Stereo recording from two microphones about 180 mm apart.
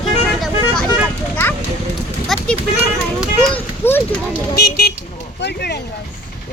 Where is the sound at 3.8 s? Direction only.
15° left (ahead or behind).